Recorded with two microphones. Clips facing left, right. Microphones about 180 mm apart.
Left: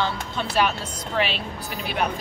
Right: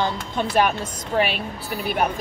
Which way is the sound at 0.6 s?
50° right (ahead or behind).